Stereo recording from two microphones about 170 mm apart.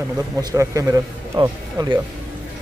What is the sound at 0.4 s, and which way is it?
A man's voice, 20° right (ahead or behind).